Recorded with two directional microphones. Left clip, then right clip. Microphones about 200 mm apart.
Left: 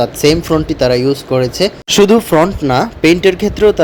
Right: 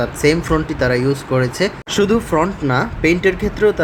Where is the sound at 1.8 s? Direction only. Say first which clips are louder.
Left 9 dB; 25° left (ahead or behind).